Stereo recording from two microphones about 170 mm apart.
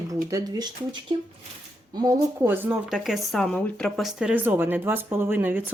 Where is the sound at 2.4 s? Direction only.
10° right (ahead or behind).